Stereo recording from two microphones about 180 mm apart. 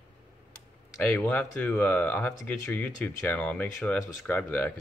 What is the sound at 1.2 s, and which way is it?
Speech, 10° left (ahead or behind).